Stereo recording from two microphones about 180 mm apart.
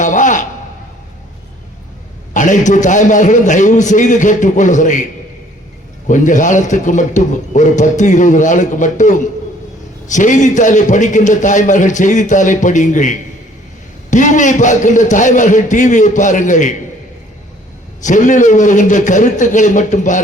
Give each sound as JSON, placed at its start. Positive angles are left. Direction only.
{"t": 0.0, "sound": "a sound", "side_deg": 45}
{"t": 2.3, "sound": "a man's voice", "side_deg": 45}
{"t": 6.1, "sound": "a man's voice", "side_deg": 45}
{"t": 18.0, "sound": "a man's voice", "side_deg": 45}